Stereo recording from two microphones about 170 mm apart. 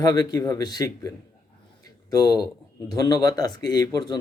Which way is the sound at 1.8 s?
25° left (ahead or behind).